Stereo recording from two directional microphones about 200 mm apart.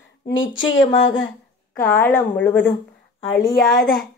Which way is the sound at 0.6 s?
70° left (ahead or behind).